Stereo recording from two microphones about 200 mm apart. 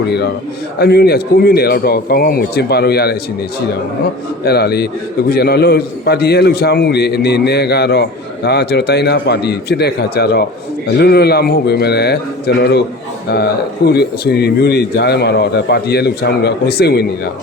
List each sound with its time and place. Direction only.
0.8 s a man's voice: 55° left (ahead or behind)
4.4 s a man's voice: 55° left (ahead or behind)